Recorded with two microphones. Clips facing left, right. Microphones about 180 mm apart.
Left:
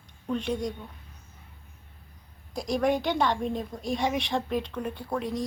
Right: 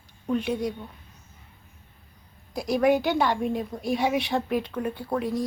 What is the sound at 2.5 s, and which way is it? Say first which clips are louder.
A woman's voice: right 4 dB; 5° right (ahead or behind).